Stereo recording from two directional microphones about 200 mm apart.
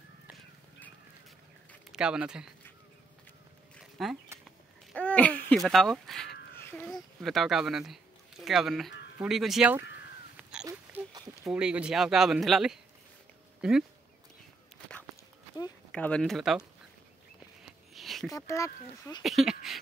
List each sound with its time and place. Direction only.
1.7 s speech: 5° right (ahead or behind)
4.0 s speech: centre (ahead or behind)
4.5 s a sound: 5° left (ahead or behind)
7.2 s speech: centre (ahead or behind)
10.6 s a sound: 15° right (ahead or behind)
11.4 s speech: 5° right (ahead or behind)
15.9 s speech: 5° left (ahead or behind)
17.9 s a sound: centre (ahead or behind)
18.3 s speech: 15° left (ahead or behind)
19.2 s speech: centre (ahead or behind)